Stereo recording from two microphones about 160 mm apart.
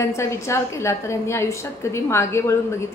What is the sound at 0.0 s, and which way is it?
A woman's voice, 20° left (ahead or behind).